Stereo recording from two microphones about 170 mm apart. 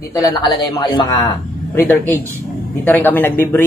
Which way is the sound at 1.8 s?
10° left (ahead or behind).